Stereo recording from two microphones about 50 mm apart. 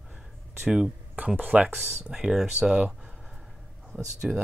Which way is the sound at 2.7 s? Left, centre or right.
Centre.